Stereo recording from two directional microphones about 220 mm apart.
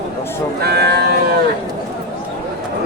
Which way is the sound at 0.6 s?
50° right (ahead or behind).